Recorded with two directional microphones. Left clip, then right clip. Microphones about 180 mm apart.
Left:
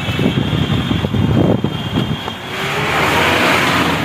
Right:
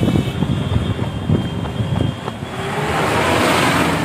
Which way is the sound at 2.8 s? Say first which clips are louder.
Left 3 dB; 40° left (ahead or behind).